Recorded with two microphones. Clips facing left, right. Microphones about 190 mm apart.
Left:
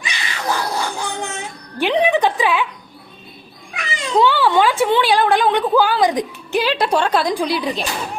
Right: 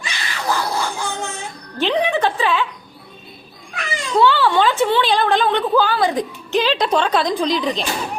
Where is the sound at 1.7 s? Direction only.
15° left (ahead or behind).